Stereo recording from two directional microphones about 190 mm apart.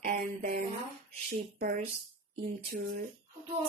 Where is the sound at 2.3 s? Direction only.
50° right (ahead or behind).